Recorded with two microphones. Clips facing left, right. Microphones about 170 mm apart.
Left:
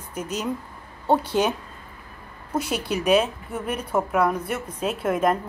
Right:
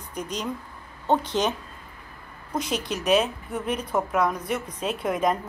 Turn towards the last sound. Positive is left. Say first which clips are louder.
# left 2 dB
turn(degrees=5)  # may be behind; listen again after turning